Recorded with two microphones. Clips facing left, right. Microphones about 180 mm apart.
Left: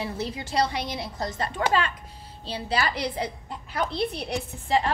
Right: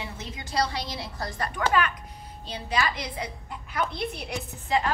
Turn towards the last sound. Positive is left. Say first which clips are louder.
# left 2 dB
turn(degrees=30)  # may be behind; listen again after turning